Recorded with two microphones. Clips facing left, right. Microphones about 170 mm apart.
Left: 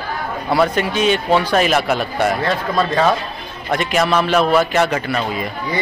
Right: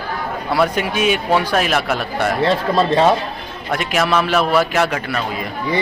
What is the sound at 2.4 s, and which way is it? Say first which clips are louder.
Speech: right 3 dB; 30° right (ahead or behind).